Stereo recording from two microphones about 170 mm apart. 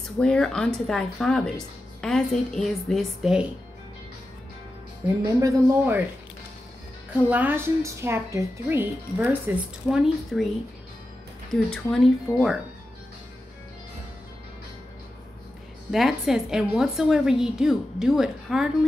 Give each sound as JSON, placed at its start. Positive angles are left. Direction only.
{"t": 0.2, "sound": "a woman's voice", "side_deg": 5}
{"t": 5.0, "sound": "speech", "side_deg": -20}
{"t": 7.2, "sound": "a woman's voice", "side_deg": -10}
{"t": 11.7, "sound": "a woman's voice", "side_deg": 0}
{"t": 15.9, "sound": "a woman's voice", "side_deg": 0}